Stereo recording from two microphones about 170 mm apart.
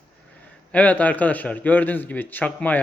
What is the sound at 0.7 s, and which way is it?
A man's voice, 10° left (ahead or behind).